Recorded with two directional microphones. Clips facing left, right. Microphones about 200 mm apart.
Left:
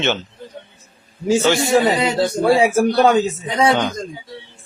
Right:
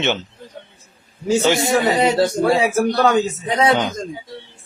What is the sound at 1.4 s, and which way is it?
Speech, 20° right (ahead or behind).